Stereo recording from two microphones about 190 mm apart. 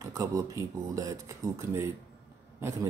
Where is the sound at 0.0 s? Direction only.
20° right (ahead or behind).